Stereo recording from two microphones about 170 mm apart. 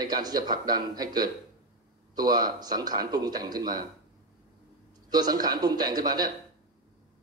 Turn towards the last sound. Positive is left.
turn(degrees=-25)  # may be behind; listen again after turning